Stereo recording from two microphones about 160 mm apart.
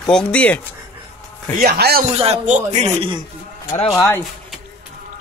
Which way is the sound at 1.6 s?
70° right (ahead or behind).